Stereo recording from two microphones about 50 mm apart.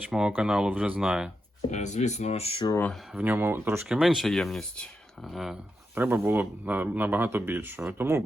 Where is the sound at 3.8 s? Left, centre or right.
Centre.